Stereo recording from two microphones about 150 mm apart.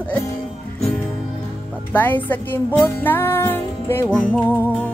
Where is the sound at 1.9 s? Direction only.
10° left (ahead or behind).